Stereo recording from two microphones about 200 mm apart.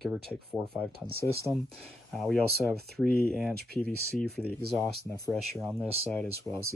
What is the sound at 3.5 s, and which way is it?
Speech, 50° right (ahead or behind).